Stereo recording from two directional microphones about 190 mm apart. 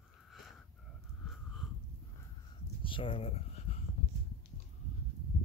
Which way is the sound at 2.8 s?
25° left (ahead or behind).